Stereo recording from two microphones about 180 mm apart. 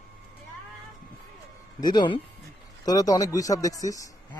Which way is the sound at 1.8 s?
25° left (ahead or behind).